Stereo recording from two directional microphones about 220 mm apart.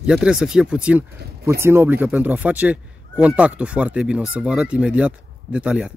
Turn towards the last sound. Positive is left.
turn(degrees=-5)  # may be behind; listen again after turning